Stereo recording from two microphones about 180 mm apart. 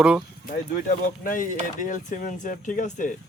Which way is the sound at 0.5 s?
55° left (ahead or behind).